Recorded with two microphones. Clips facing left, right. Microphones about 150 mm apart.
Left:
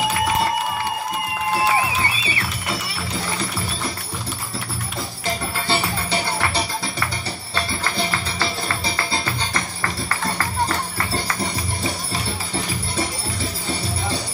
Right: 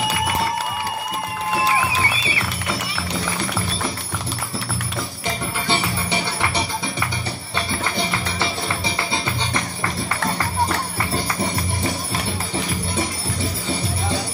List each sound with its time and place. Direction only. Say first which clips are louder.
5.2 s music: left 1 dB; 20° right (ahead or behind)
7.9 s music: right 1 dB; 20° right (ahead or behind)